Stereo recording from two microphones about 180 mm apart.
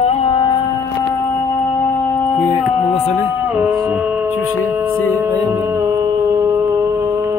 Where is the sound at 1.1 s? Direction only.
15° left (ahead or behind).